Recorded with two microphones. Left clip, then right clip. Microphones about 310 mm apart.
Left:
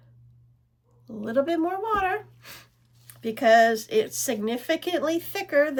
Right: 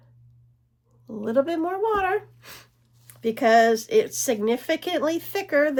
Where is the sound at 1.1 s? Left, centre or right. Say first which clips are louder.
Right 2 dB; centre.